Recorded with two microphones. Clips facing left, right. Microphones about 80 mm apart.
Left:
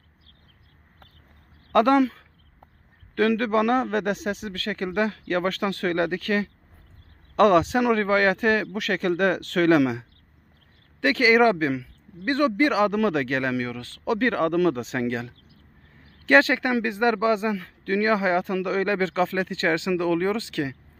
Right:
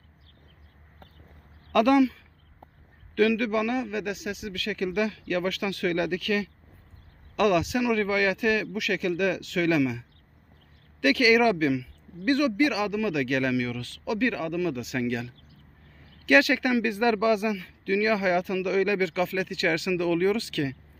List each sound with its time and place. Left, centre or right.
1.7 s speech: left
11.0 s speech: left
14.8 s speech: left